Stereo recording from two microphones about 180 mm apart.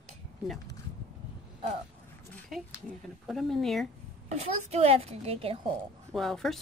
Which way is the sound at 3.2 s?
Centre (ahead or behind).